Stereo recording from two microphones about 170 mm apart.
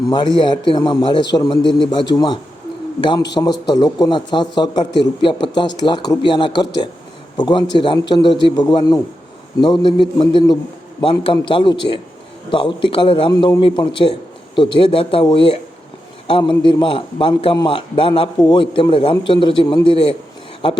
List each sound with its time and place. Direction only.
0.3 s a man's voice: 30° left (ahead or behind)